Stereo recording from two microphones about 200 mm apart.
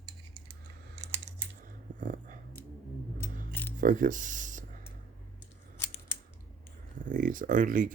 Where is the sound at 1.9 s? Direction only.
40° right (ahead or behind).